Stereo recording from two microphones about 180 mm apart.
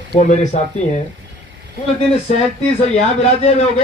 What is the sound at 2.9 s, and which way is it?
Speech, 35° left (ahead or behind).